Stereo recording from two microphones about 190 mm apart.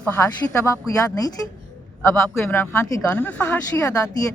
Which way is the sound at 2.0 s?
10° left (ahead or behind).